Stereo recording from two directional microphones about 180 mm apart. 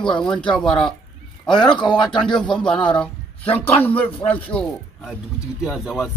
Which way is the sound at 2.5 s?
5° left (ahead or behind).